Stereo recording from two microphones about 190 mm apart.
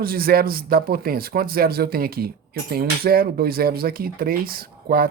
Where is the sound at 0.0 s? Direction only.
50° right (ahead or behind).